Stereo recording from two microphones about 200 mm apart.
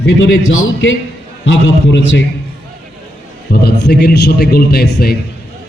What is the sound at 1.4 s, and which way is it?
Speech, 70° left (ahead or behind).